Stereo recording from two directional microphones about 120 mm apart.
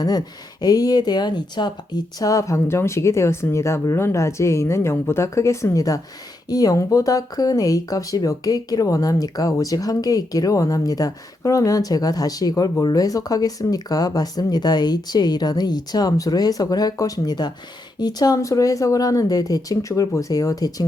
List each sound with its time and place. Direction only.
0.6 s speech: 35° left (ahead or behind)